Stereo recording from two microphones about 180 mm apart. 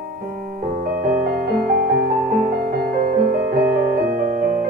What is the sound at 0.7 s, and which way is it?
Music, 50° right (ahead or behind).